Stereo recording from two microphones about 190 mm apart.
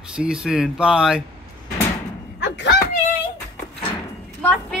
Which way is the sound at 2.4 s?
60° left (ahead or behind).